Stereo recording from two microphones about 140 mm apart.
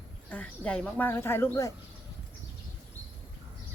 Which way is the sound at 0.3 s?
10° left (ahead or behind).